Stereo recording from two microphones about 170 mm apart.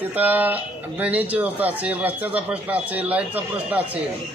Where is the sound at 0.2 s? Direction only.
10° right (ahead or behind).